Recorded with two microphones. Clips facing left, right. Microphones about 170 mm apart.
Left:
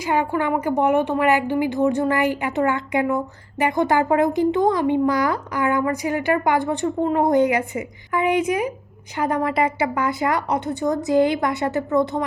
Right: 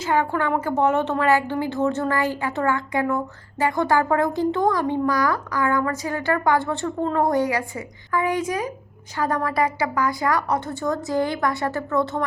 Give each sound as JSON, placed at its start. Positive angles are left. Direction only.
{"t": 0.0, "sound": "a woman's voice", "side_deg": 15}